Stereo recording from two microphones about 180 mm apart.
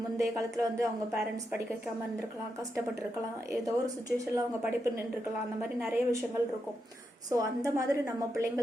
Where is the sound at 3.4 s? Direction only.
20° right (ahead or behind).